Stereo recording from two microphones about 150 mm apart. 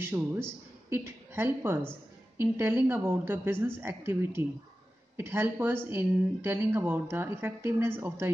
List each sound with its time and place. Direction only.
0.0 s speech: 15° right (ahead or behind)